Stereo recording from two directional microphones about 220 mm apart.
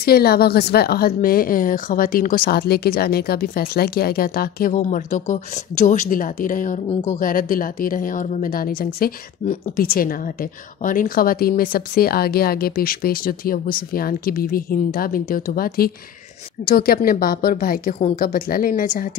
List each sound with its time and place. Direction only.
0.0 s a woman's voice: 45° left (ahead or behind)